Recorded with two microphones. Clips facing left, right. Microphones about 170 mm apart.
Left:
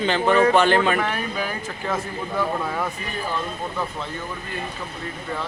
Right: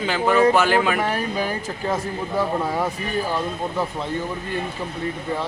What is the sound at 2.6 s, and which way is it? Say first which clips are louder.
Speech: right 3 dB; 15° right (ahead or behind).